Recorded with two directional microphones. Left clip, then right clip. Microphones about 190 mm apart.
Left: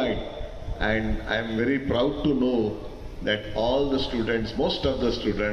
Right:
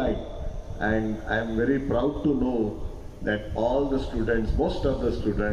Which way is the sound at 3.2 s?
40° right (ahead or behind).